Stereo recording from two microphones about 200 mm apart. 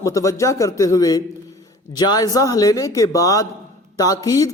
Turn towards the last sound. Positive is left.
turn(degrees=15)  # may be behind; listen again after turning